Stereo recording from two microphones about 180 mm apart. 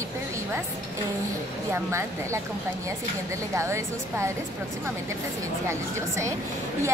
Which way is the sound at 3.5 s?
15° right (ahead or behind).